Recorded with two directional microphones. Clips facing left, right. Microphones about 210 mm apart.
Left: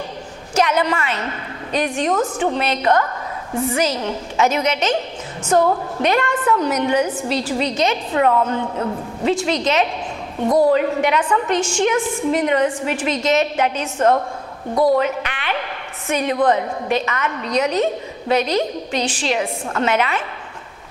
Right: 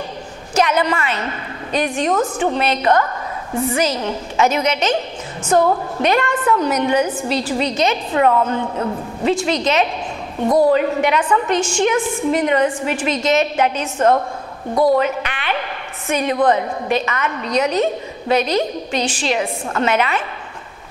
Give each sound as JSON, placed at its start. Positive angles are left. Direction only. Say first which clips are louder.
{"t": 0.6, "sound": "a woman's voice", "louder": "right 1 dB", "side_deg": -15}
{"t": 5.5, "sound": "a woman's voice", "louder": "right 1 dB", "side_deg": -25}
{"t": 10.7, "sound": "a woman's voice", "louder": "right 1 dB", "side_deg": -15}